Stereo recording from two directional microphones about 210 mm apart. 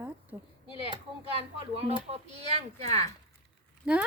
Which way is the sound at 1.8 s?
30° right (ahead or behind).